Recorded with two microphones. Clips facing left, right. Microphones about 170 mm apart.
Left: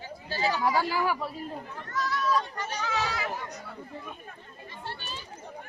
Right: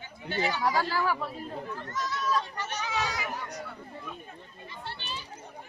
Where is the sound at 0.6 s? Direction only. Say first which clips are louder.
Left 2 dB; 10° left (ahead or behind).